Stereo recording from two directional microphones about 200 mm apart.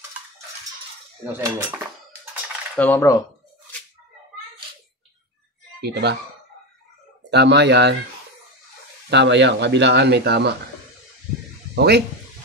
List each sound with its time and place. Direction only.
1.2 s cutlery: 10° right (ahead or behind)
2.8 s speech: 10° left (ahead or behind)
5.8 s speech: 55° right (ahead or behind)
7.2 s speech: 60° right (ahead or behind)
9.1 s speech: 60° right (ahead or behind)
11.7 s speech: 55° right (ahead or behind)